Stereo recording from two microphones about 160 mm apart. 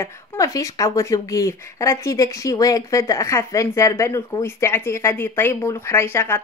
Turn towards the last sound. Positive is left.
turn(degrees=15)  # may be behind; listen again after turning